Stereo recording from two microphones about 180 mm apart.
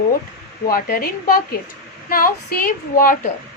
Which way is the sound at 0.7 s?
55° left (ahead or behind).